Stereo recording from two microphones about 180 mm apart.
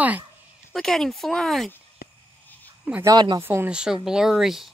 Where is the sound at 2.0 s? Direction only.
55° left (ahead or behind).